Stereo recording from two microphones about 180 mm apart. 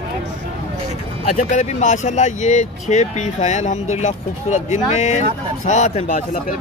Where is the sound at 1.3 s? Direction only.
45° left (ahead or behind).